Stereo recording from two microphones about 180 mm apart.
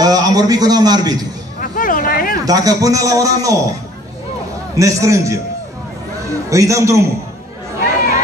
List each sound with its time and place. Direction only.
0.0 s a man's voice: 20° right (ahead or behind)
1.6 s a sound: 50° left (ahead or behind)
2.4 s a man's voice: 20° right (ahead or behind)
4.7 s a man's voice: 15° right (ahead or behind)
6.5 s a man's voice: 15° right (ahead or behind)